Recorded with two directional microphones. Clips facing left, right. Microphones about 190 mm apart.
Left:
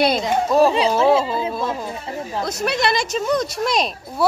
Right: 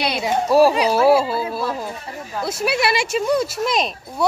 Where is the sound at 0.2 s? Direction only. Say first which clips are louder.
Right 1 dB; 10° right (ahead or behind).